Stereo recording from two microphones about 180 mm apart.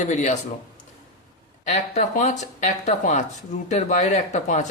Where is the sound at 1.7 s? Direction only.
40° left (ahead or behind).